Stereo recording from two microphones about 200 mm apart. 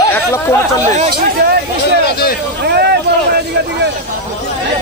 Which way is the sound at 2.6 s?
55° right (ahead or behind).